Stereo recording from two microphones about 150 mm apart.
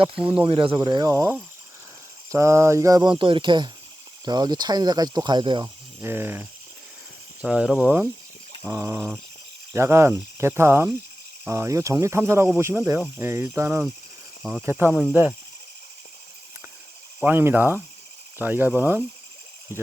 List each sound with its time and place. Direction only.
0.2 s speech: 10° right (ahead or behind)
0.4 s speech: 35° right (ahead or behind)
5.6 s speech: 15° right (ahead or behind)
17.2 s speech: 15° right (ahead or behind)